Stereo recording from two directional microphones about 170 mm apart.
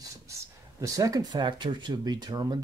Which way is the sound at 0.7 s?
20° right (ahead or behind).